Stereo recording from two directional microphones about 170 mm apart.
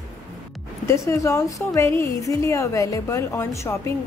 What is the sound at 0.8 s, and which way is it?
A woman's voice, 15° left (ahead or behind).